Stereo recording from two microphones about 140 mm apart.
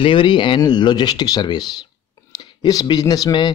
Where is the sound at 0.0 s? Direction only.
35° left (ahead or behind).